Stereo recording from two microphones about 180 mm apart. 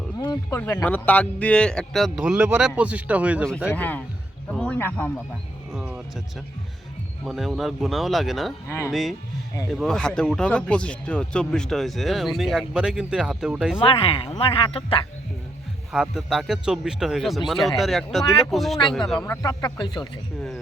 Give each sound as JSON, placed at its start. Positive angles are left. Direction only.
{"t": 0.2, "sound": "a sound", "side_deg": 20}
{"t": 0.6, "sound": "speech", "side_deg": 15}
{"t": 3.7, "sound": "a man's voice", "side_deg": 10}
{"t": 5.7, "sound": "speech", "side_deg": -5}
{"t": 7.3, "sound": "speech", "side_deg": 0}
{"t": 8.6, "sound": "a man's voice", "side_deg": 15}
{"t": 8.9, "sound": "speech", "side_deg": 0}
{"t": 13.7, "sound": "speech", "side_deg": 30}
{"t": 15.9, "sound": "speech", "side_deg": 0}
{"t": 19.2, "sound": "speech", "side_deg": 15}